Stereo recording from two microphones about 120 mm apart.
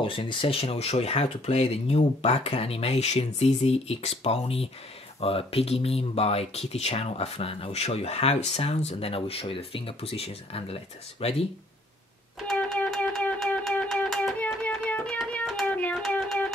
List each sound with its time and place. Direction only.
0.0 s speech: 45° left (ahead or behind)
12.7 s music: 10° left (ahead or behind)
14.6 s music: 10° left (ahead or behind)